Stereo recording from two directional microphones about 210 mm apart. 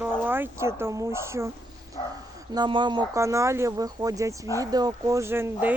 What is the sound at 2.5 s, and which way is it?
Speech, 20° right (ahead or behind).